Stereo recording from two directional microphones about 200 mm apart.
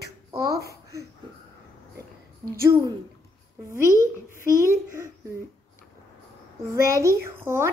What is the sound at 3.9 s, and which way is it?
Speech, 15° left (ahead or behind).